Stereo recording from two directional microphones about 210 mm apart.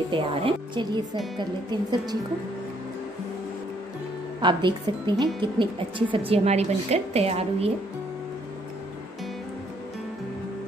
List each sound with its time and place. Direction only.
0.1 s speech: 25° right (ahead or behind)
4.4 s speech: 20° right (ahead or behind)